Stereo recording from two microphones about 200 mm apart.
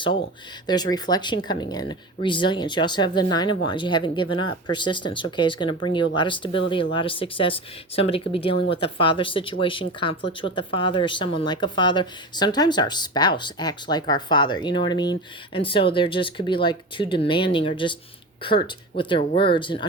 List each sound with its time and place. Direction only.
0.7 s speech: 20° left (ahead or behind)